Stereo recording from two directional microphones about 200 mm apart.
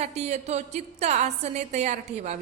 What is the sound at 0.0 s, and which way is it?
A man's voice, 35° right (ahead or behind).